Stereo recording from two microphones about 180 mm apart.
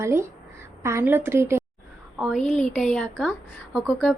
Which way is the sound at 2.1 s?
Centre (ahead or behind).